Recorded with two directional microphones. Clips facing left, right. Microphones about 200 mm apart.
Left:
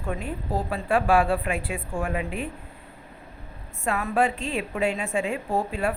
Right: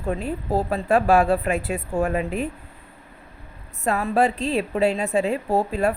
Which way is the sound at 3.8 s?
35° right (ahead or behind).